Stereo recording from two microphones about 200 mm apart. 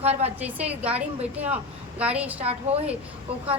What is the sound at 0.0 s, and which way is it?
Speech, 30° right (ahead or behind).